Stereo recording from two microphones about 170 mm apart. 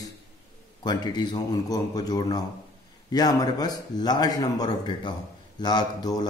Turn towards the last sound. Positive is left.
turn(degrees=25)  # may be behind; listen again after turning